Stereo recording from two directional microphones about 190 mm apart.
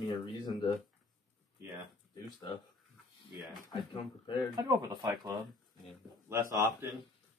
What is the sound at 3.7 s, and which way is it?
Speech, 30° left (ahead or behind).